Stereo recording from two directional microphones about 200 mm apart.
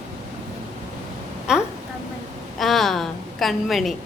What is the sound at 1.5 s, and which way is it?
Speech, 5° right (ahead or behind).